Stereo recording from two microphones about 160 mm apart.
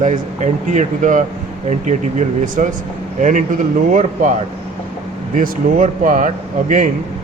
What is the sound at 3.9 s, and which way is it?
Speech, 50° right (ahead or behind).